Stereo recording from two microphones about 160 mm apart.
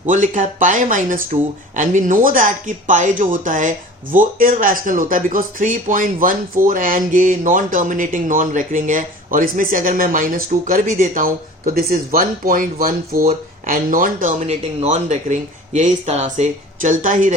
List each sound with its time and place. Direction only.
0.1 s speech: 55° right (ahead or behind)